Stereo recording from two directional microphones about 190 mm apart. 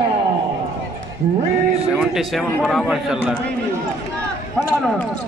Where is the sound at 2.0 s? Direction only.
5° right (ahead or behind).